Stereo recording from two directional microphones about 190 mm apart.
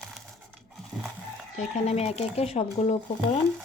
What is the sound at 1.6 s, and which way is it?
Speech, 35° left (ahead or behind).